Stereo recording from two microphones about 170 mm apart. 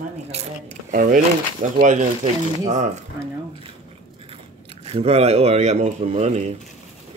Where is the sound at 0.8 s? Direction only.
50° right (ahead or behind).